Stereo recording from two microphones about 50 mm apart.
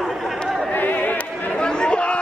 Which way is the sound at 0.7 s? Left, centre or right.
Left.